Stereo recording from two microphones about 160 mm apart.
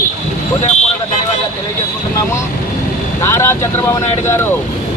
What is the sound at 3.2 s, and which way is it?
Speech, 15° left (ahead or behind).